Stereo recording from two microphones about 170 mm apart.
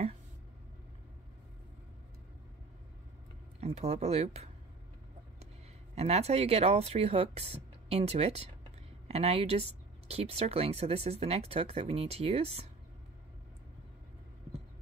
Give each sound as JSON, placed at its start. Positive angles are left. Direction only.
{"t": 3.6, "sound": "speech", "side_deg": -40}
{"t": 5.9, "sound": "speech", "side_deg": -35}